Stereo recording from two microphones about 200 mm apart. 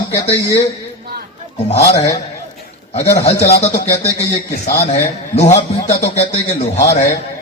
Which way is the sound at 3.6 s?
35° left (ahead or behind).